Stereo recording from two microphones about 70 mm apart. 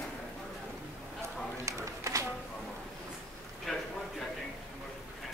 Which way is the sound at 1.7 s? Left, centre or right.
Right.